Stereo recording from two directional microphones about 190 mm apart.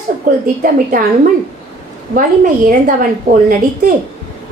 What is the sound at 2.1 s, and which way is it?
Speech, 45° right (ahead or behind).